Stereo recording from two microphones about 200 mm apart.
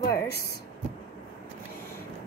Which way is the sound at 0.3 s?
55° left (ahead or behind).